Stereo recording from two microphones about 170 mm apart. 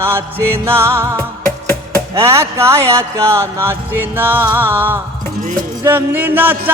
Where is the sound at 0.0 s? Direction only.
15° right (ahead or behind).